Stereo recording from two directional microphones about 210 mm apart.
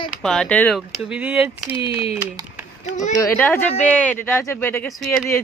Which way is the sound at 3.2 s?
10° left (ahead or behind).